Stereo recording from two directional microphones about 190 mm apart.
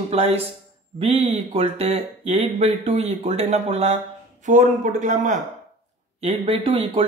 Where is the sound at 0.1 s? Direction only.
30° right (ahead or behind).